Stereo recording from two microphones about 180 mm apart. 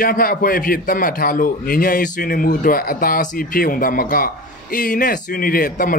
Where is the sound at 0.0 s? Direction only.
55° left (ahead or behind).